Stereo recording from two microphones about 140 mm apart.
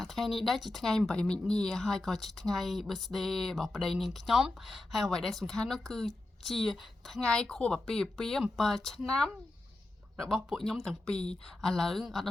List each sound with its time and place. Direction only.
0.0 s speech: centre (ahead or behind)